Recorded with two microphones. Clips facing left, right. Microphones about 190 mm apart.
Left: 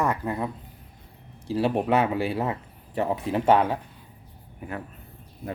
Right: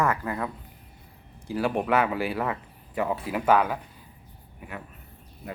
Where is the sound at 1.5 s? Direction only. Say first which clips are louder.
Left 2 dB; 25° left (ahead or behind).